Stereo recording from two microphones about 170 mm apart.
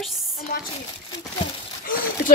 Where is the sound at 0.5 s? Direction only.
55° left (ahead or behind).